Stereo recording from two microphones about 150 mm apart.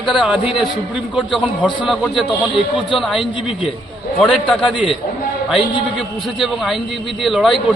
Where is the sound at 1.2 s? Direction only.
5° left (ahead or behind).